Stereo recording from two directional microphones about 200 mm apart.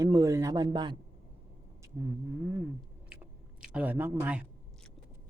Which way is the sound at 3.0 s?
5° right (ahead or behind).